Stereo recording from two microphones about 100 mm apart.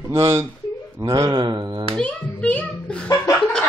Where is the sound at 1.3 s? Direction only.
50° right (ahead or behind).